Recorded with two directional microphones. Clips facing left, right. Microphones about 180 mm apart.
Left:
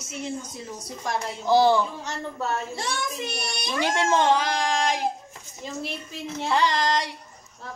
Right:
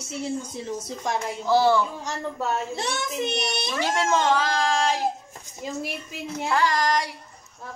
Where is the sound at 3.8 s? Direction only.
20° left (ahead or behind).